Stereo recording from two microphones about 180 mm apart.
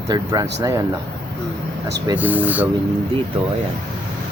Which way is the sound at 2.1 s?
10° right (ahead or behind).